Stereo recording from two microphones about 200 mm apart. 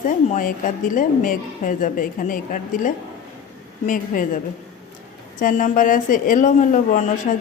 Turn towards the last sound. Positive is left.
turn(degrees=40)  # may be behind; listen again after turning